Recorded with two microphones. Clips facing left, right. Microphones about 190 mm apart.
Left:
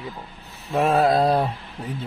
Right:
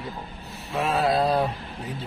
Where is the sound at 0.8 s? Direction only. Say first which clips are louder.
Left 5 dB; 50° left (ahead or behind).